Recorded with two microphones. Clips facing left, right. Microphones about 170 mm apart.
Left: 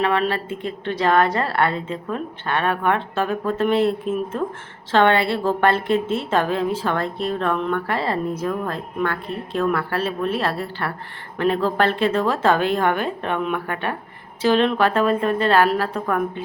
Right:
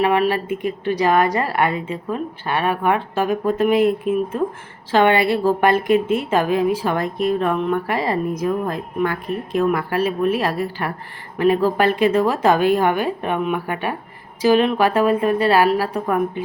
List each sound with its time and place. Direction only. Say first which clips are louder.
0.0 s a woman's voice: right 3 dB; 10° right (ahead or behind)